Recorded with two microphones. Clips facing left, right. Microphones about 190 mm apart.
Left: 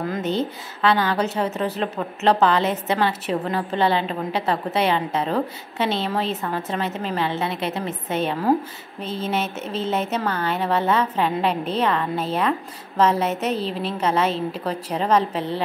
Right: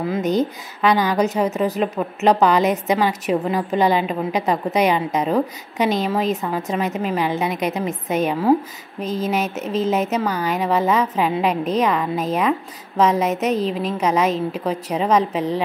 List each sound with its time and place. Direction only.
0.0 s a woman's voice: 5° right (ahead or behind)
9.0 s speech: 40° right (ahead or behind)
9.8 s a woman's voice: 10° right (ahead or behind)
13.5 s a woman's voice: 35° left (ahead or behind)
13.9 s a woman's voice: 10° right (ahead or behind)